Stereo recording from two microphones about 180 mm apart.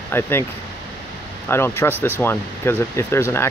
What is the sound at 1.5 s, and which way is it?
Speech, 15° left (ahead or behind).